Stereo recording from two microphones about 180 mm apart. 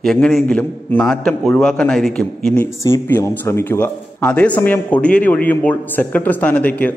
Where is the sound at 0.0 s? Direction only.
Centre (ahead or behind).